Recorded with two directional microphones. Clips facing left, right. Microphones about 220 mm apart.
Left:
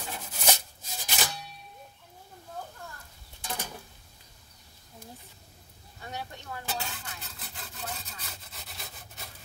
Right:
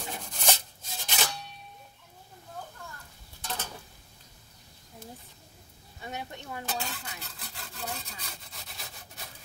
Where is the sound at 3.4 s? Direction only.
15° left (ahead or behind).